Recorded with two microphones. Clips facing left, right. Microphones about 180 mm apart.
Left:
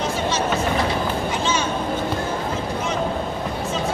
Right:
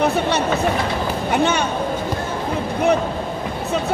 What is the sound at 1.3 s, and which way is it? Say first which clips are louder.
Music: right 5 dB; 60° right (ahead or behind).